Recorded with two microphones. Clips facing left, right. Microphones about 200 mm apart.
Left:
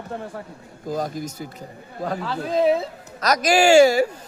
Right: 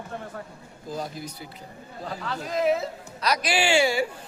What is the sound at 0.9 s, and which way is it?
Speech, 45° left (ahead or behind).